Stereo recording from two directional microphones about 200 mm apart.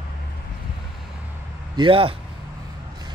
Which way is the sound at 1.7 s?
25° right (ahead or behind).